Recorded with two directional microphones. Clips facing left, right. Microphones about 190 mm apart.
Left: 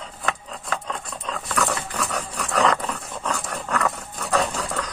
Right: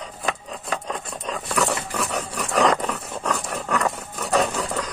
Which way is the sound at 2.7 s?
25° right (ahead or behind).